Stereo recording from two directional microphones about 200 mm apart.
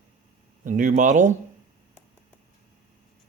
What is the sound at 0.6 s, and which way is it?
Speech, 40° right (ahead or behind).